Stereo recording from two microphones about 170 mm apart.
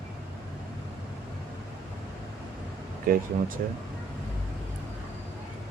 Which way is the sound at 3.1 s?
55° right (ahead or behind).